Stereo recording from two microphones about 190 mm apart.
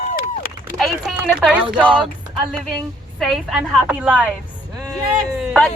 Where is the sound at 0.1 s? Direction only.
50° left (ahead or behind).